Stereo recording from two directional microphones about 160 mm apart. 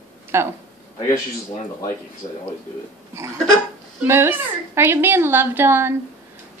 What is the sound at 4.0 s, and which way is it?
A woman's voice, 15° right (ahead or behind).